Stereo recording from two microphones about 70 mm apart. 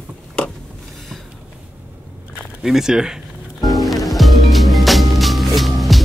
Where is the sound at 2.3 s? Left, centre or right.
Centre.